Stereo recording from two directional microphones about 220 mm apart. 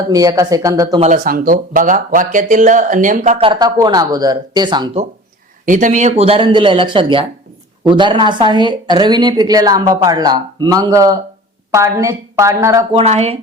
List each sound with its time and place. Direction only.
0.1 s a woman's voice: 15° right (ahead or behind)
1.0 s speech: 40° right (ahead or behind); by 5.0 s 20° right (ahead or behind)
5.6 s a woman's voice: 35° right (ahead or behind); by 13.0 s 15° right (ahead or behind)
13.0 s a woman's voice: 30° right (ahead or behind)